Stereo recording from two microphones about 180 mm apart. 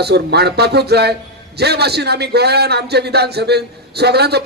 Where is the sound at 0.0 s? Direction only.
65° right (ahead or behind).